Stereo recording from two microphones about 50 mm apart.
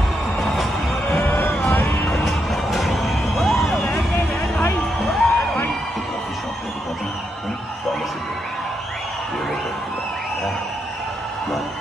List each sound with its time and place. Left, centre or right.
0.4 s music: centre
1.2 s vehicle: left
1.7 s music: left
2.0 s music: centre
5.0 s music: centre